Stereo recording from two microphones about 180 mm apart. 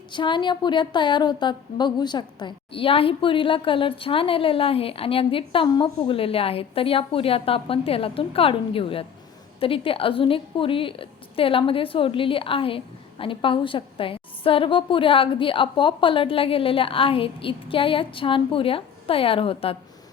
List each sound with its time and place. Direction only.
0.1 s a woman's voice: 25° left (ahead or behind)